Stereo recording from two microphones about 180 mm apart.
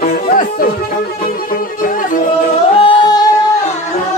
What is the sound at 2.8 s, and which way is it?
Music, 20° left (ahead or behind).